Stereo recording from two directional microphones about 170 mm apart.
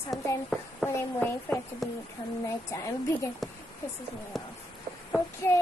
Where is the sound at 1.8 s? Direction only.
Centre (ahead or behind).